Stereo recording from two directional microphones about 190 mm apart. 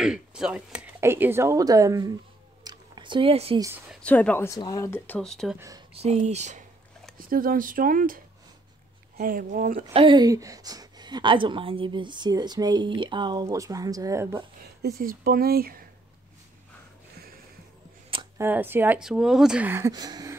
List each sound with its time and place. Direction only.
0.0 s speech: 5° right (ahead or behind)
2.6 s a sound: 25° right (ahead or behind)
3.9 s speech: 5° left (ahead or behind)
5.9 s speech: 35° right (ahead or behind)
7.2 s speech: 50° right (ahead or behind)
9.9 s a woman's voice: 25° right (ahead or behind)
14.6 s speech: 55° right (ahead or behind)
18.4 s speech: 10° right (ahead or behind)